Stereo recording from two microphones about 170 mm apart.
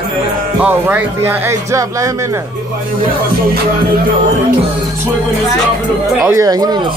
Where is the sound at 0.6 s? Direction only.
10° right (ahead or behind).